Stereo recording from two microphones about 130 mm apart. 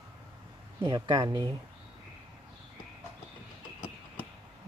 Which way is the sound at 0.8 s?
35° right (ahead or behind).